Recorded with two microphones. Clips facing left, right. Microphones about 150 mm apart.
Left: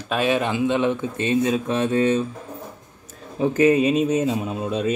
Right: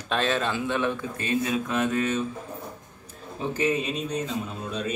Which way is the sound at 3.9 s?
90° left.